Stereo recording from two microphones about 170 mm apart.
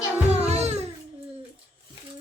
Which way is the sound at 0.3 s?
40° right (ahead or behind).